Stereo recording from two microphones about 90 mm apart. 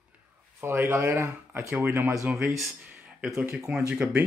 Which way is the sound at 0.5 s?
25° right (ahead or behind).